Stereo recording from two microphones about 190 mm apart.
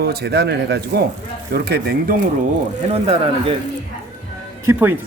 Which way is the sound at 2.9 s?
30° right (ahead or behind).